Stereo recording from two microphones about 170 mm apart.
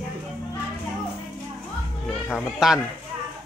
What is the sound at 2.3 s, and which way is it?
Speech, 5° right (ahead or behind).